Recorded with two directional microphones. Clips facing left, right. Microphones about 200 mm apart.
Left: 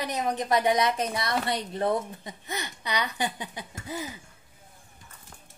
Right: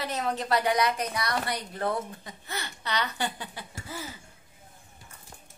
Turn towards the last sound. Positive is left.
turn(degrees=15)  # may be behind; listen again after turning